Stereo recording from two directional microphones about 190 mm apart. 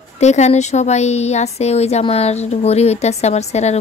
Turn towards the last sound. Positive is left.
turn(degrees=35)  # may be behind; listen again after turning